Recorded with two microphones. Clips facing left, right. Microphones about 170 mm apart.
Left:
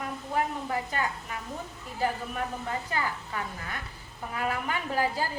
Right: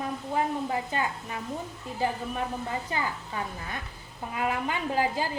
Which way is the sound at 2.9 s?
20° right (ahead or behind).